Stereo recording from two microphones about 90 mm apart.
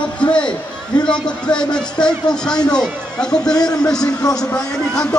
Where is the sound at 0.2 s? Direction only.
10° left (ahead or behind).